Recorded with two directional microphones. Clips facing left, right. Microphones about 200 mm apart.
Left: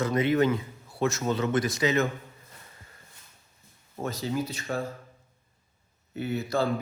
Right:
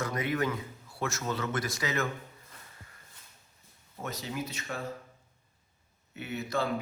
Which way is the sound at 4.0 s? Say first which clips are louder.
Left 6 dB; 30° left (ahead or behind).